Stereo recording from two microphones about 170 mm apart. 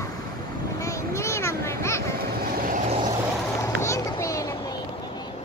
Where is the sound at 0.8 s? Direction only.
20° left (ahead or behind).